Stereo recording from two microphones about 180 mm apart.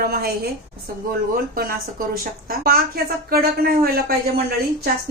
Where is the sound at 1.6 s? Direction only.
55° right (ahead or behind).